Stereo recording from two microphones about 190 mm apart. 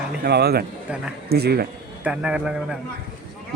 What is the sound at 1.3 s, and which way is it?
Speech, 55° right (ahead or behind).